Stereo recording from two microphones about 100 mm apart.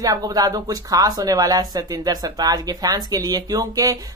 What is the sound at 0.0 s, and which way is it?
Speech, 40° right (ahead or behind).